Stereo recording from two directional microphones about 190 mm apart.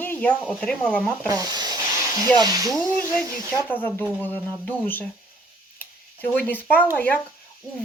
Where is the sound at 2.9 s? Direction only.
10° left (ahead or behind).